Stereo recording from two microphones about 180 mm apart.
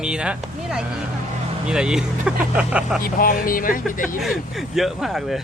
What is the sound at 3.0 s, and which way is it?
Speech, 55° left (ahead or behind).